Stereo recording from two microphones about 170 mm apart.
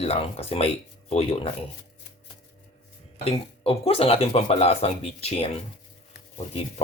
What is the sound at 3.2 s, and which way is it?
Speech, 35° left (ahead or behind).